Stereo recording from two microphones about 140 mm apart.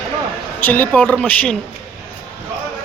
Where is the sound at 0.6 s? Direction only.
10° left (ahead or behind).